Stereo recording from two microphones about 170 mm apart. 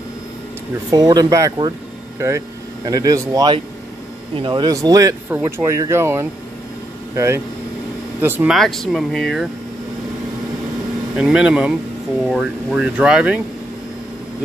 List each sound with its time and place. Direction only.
0.9 s speech: 20° right (ahead or behind)
8.5 s speech: centre (ahead or behind)
11.1 s speech: 5° right (ahead or behind)